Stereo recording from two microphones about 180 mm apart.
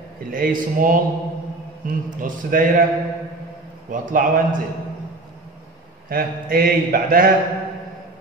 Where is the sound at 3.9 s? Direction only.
50° right (ahead or behind).